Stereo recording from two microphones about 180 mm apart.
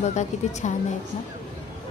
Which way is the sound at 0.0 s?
40° left (ahead or behind).